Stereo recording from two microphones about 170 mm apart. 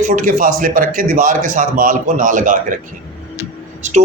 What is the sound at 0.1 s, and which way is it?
A man's voice, 55° right (ahead or behind).